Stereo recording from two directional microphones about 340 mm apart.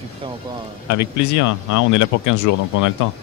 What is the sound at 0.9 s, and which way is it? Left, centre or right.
Speech, left.